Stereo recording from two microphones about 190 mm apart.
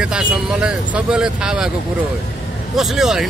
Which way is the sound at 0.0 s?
5° right (ahead or behind).